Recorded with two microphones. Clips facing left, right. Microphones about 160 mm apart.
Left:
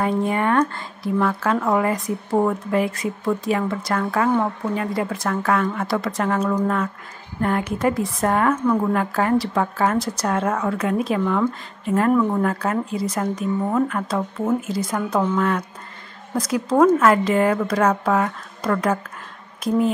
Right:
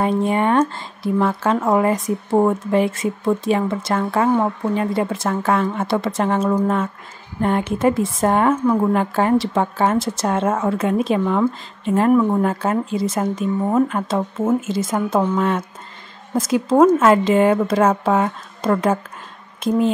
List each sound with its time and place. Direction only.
0.0 s speech: 25° right (ahead or behind)